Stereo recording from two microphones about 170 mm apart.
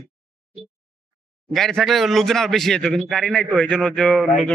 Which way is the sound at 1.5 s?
Centre (ahead or behind).